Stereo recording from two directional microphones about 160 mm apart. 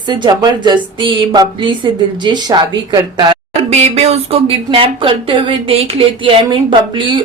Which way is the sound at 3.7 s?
45° right (ahead or behind).